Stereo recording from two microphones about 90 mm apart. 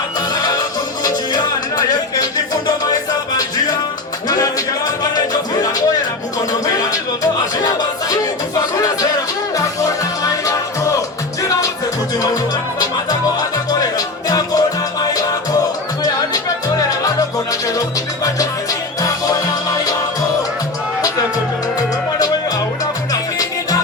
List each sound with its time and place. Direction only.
0.3 s music: 45° left (ahead or behind)
14.3 s music: 45° left (ahead or behind)
17.0 s music: 40° left (ahead or behind)